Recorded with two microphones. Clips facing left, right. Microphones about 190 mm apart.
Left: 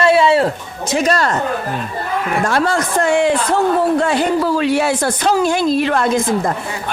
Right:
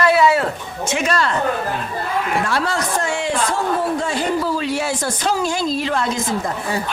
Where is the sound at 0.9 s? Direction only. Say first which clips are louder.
Left 4 dB; 35° left (ahead or behind).